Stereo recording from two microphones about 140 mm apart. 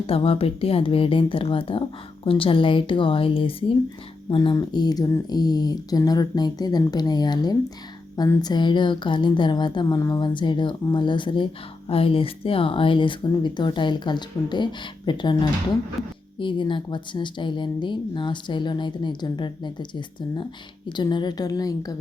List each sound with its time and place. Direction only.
0.1 s speech: 40° left (ahead or behind)
16.4 s speech: 35° left (ahead or behind)